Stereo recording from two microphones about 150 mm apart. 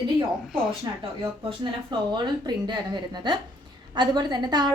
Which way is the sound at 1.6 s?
30° right (ahead or behind).